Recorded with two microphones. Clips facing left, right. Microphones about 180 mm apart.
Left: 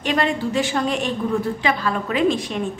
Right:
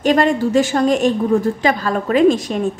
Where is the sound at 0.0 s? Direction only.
45° right (ahead or behind).